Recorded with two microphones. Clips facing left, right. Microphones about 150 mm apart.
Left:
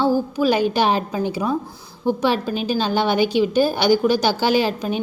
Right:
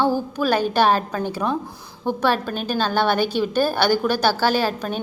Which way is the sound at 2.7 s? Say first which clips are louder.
Even; 15° left (ahead or behind).